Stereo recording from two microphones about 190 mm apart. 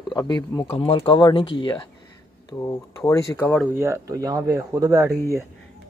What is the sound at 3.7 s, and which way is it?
Speech, 15° right (ahead or behind).